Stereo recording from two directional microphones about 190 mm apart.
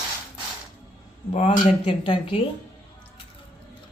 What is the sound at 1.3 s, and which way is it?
Speech, 35° left (ahead or behind).